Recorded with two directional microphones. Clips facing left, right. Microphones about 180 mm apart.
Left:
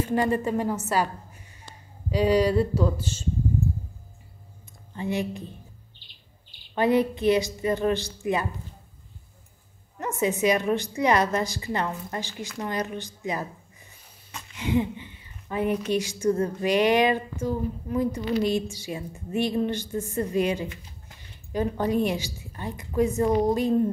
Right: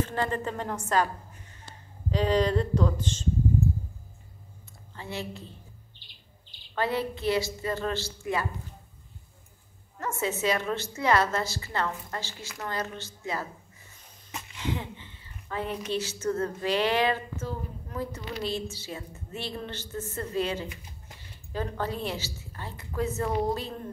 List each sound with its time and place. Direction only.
0.0 s speech: 10° left (ahead or behind)
4.9 s speech: 15° left (ahead or behind)
6.7 s speech: 15° left (ahead or behind)
9.9 s speech: 15° left (ahead or behind)
14.6 s speech: 15° left (ahead or behind)